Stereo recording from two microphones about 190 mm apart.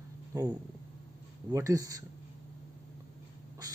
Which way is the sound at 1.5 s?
15° right (ahead or behind).